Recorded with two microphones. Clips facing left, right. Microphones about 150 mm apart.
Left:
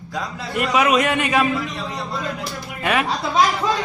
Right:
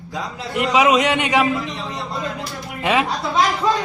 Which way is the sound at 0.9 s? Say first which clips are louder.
Right 1 dB; 90° right.